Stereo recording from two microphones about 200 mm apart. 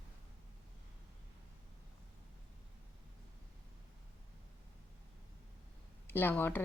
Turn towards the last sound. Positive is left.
turn(degrees=10)  # may be behind; listen again after turning